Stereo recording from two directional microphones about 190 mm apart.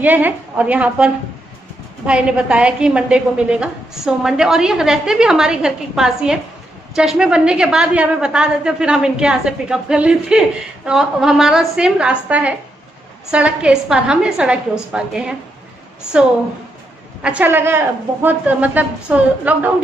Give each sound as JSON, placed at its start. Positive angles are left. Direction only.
{"t": 0.0, "sound": "a woman's voice", "side_deg": -10}